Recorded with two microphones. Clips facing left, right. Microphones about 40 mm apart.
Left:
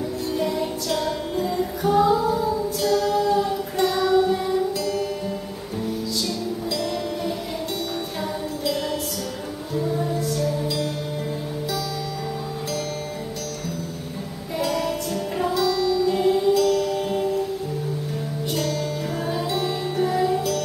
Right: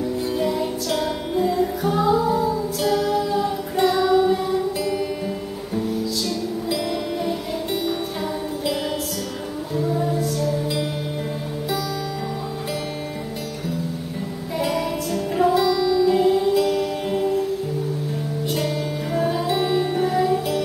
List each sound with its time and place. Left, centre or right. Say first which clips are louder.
0.3 s music: even; centre
1.5 s music: even; centre
6.7 s music: right 3 dB; centre
9.8 s music: right 2 dB; centre
14.6 s music: right 1 dB; centre
16.5 s music: even; centre
18.5 s music: even; centre